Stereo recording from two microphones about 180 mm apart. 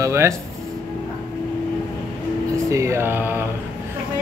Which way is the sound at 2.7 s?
15° right (ahead or behind).